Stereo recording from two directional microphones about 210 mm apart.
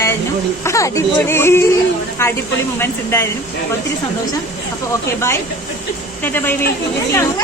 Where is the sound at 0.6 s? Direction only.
15° left (ahead or behind).